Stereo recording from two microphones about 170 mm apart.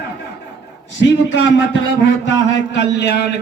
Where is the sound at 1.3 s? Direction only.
90° left.